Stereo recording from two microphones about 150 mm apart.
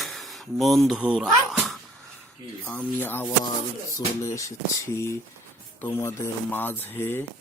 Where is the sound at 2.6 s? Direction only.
10° left (ahead or behind).